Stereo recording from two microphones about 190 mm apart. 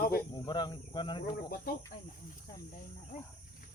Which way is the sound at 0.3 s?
25° left (ahead or behind).